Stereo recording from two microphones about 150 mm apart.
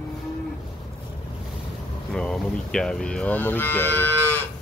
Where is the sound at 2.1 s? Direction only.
5° left (ahead or behind).